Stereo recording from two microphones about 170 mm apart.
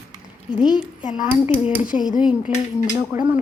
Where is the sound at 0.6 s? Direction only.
5° right (ahead or behind).